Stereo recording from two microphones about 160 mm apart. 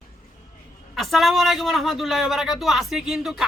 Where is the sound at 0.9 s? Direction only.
Centre (ahead or behind).